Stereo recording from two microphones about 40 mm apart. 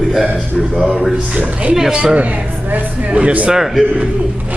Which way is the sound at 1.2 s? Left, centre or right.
Right.